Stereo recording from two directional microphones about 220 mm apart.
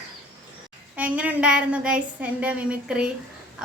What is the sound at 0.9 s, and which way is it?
A woman's voice, 5° right (ahead or behind).